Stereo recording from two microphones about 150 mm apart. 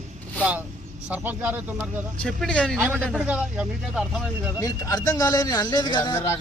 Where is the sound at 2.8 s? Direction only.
10° right (ahead or behind).